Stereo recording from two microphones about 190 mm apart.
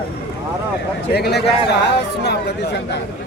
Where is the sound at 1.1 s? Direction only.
60° left (ahead or behind).